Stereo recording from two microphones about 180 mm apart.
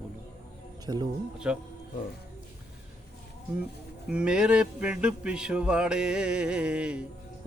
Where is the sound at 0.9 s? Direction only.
20° right (ahead or behind).